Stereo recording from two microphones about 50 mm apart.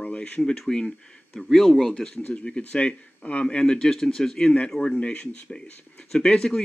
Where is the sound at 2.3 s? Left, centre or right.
Left.